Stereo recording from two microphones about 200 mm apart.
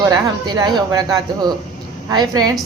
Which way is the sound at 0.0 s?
20° right (ahead or behind).